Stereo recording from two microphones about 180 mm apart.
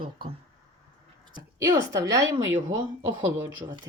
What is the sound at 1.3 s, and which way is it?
A woman's voice, 20° right (ahead or behind).